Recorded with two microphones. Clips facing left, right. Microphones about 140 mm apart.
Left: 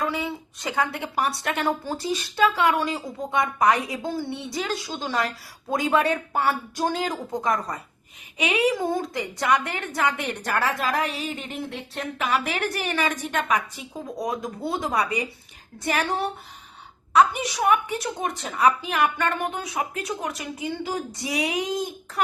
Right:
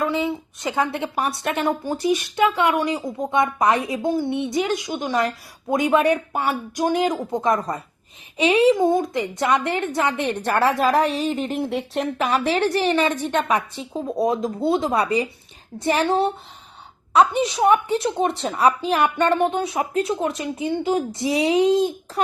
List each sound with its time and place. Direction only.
0.0 s a woman's voice: 20° right (ahead or behind)
10.7 s a woman's voice: centre (ahead or behind)
11.3 s a sound: 35° right (ahead or behind)
11.9 s a woman's voice: 35° right (ahead or behind)